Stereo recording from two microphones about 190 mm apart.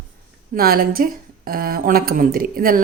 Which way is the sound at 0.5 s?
55° right (ahead or behind).